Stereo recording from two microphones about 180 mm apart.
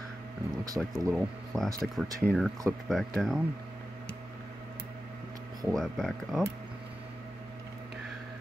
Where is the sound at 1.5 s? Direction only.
Centre (ahead or behind).